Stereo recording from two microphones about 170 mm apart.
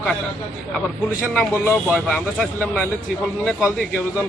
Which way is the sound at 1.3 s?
10° left (ahead or behind).